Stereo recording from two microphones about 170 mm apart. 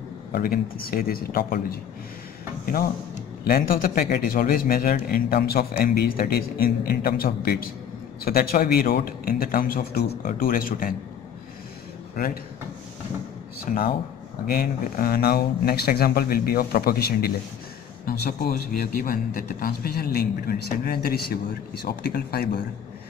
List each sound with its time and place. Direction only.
0.3 s a man's voice: 60° left (ahead or behind)
13.7 s a man's voice: 55° left (ahead or behind)